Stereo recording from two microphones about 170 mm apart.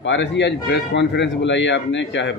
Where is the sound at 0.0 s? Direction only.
90° left.